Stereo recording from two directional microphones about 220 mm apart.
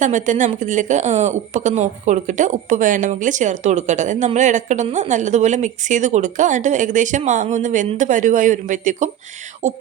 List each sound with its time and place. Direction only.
0.0 s a woman's voice: 35° right (ahead or behind)